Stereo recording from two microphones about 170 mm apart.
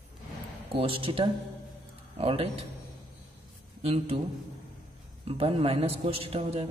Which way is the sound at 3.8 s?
35° right (ahead or behind).